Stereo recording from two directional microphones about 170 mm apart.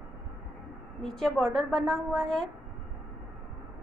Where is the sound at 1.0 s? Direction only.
5° left (ahead or behind).